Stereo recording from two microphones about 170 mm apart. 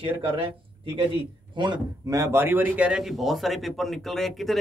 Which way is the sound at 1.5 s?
25° right (ahead or behind).